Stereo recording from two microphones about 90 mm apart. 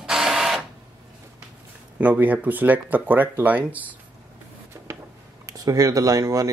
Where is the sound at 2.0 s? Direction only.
15° right (ahead or behind).